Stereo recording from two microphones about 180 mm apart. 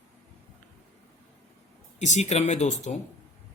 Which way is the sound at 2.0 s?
40° left (ahead or behind).